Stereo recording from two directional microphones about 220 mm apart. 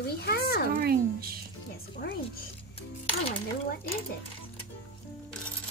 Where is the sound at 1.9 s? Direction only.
45° left (ahead or behind).